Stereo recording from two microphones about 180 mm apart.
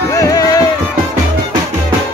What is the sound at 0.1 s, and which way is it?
Music, 20° left (ahead or behind).